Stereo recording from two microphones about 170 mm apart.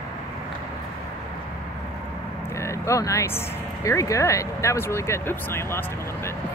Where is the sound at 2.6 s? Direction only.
15° left (ahead or behind).